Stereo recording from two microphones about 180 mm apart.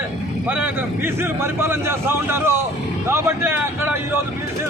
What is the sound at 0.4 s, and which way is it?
A man's voice, 10° right (ahead or behind).